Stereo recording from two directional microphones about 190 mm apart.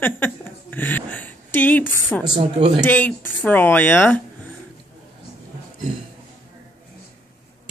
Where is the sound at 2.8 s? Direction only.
10° left (ahead or behind).